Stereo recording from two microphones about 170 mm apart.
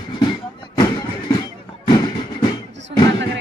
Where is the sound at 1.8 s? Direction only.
25° left (ahead or behind).